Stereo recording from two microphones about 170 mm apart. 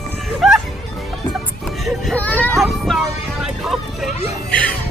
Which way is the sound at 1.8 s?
5° left (ahead or behind).